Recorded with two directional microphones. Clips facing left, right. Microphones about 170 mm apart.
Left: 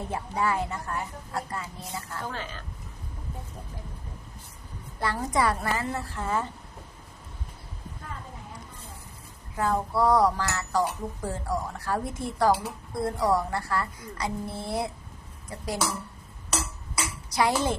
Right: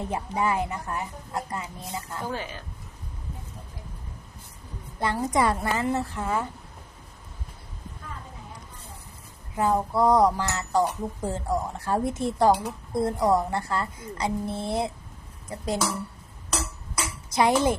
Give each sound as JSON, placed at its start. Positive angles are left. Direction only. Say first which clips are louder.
{"t": 0.0, "sound": "a woman's voice", "louder": "right 2 dB", "side_deg": -20}
{"t": 5.3, "sound": "speech", "louder": "right 1 dB", "side_deg": -20}
{"t": 9.6, "sound": "speech", "louder": "right 2 dB", "side_deg": -20}
{"t": 17.2, "sound": "speech", "louder": "right 4 dB", "side_deg": -20}